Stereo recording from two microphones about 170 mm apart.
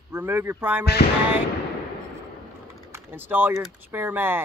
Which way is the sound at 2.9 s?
10° right (ahead or behind).